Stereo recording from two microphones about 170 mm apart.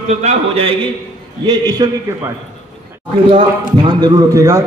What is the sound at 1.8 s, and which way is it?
Speech, 25° right (ahead or behind).